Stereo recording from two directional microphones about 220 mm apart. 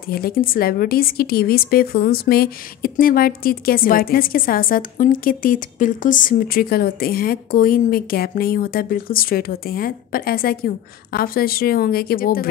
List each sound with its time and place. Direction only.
0.1 s a woman's voice: 40° left (ahead or behind)